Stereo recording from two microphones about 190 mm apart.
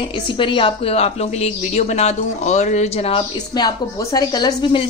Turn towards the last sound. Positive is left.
turn(degrees=25)  # may be behind; listen again after turning